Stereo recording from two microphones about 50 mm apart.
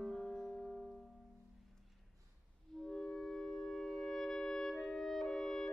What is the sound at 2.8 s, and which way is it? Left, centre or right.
Clarinet, centre.